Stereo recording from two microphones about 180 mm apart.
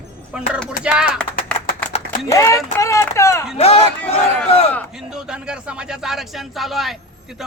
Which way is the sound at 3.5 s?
35° left (ahead or behind).